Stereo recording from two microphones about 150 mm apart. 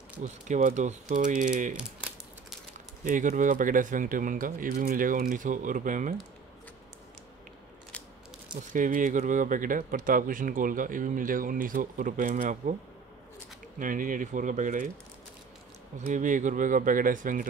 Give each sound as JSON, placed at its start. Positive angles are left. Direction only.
{"t": 0.2, "sound": "speech", "side_deg": -55}
{"t": 1.8, "sound": "speech", "side_deg": -5}
{"t": 3.0, "sound": "speech", "side_deg": -60}
{"t": 8.7, "sound": "speech", "side_deg": -60}
{"t": 13.7, "sound": "speech", "side_deg": -65}
{"t": 16.1, "sound": "speech", "side_deg": -60}